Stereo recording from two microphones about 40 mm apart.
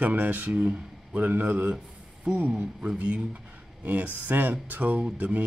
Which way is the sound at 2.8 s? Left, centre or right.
Right.